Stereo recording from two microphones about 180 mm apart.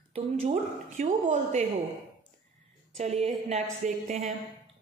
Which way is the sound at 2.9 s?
35° right (ahead or behind).